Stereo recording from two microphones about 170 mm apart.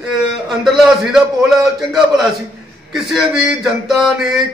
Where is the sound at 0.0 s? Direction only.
5° right (ahead or behind).